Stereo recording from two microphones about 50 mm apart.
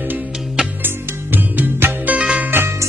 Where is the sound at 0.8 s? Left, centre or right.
Right.